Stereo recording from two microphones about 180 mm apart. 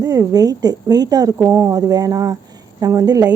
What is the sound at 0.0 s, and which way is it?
A woman's voice, 20° right (ahead or behind).